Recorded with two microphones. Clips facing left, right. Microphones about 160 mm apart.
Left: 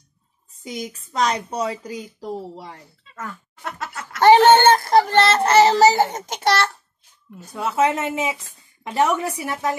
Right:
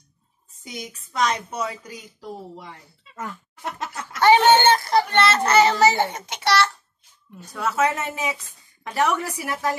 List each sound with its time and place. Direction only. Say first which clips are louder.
0.7 s speech: left 2 dB; 35° left (ahead or behind)
4.2 s a child's voice: left 4 dB; 45° left (ahead or behind)
7.5 s a woman's voice: left 2 dB; 20° left (ahead or behind)